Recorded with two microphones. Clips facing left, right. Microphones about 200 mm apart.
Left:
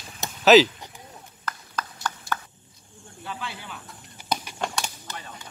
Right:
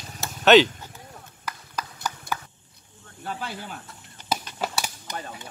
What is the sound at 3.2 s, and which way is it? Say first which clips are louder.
Snake: right 3 dB; 40° right (ahead or behind).